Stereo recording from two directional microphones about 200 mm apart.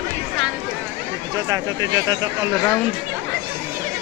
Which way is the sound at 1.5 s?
20° right (ahead or behind).